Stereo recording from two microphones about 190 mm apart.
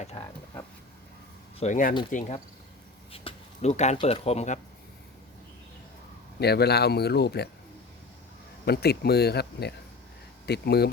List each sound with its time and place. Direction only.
0.1 s speech: 30° left (ahead or behind)
1.5 s speech: 40° left (ahead or behind)
3.1 s a sound: 35° left (ahead or behind)
3.9 s speech: 30° left (ahead or behind)
6.4 s speech: 60° left (ahead or behind)
8.6 s speech: 55° left (ahead or behind)